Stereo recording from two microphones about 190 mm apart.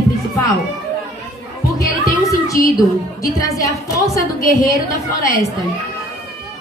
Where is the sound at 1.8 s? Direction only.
15° left (ahead or behind).